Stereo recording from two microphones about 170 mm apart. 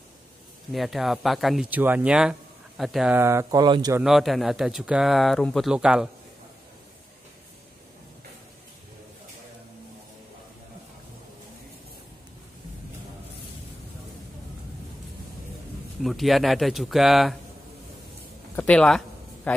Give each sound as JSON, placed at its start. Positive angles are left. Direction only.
{"t": 0.7, "sound": "speech", "side_deg": 0}
{"t": 3.2, "sound": "speech", "side_deg": -15}
{"t": 4.0, "sound": "speech", "side_deg": 0}
{"t": 16.0, "sound": "speech", "side_deg": 0}
{"t": 18.6, "sound": "a sound", "side_deg": 5}